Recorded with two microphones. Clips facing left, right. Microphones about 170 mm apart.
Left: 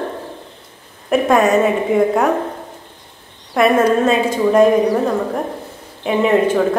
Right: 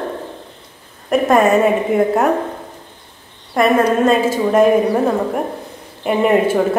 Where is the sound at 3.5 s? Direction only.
Centre (ahead or behind).